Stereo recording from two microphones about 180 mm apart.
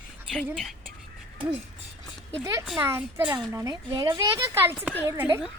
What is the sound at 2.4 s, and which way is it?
A woman's voice, 20° right (ahead or behind).